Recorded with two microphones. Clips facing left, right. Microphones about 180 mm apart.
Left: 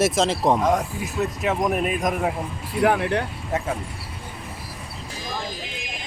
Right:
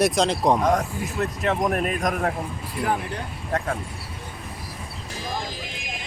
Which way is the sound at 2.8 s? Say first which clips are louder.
Left 7 dB; 70° left (ahead or behind).